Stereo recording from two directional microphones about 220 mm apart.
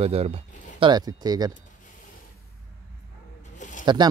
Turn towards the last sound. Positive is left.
turn(degrees=-20)  # may be behind; listen again after turning